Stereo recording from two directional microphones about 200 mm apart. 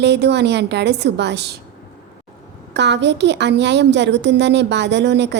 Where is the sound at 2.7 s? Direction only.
60° right (ahead or behind).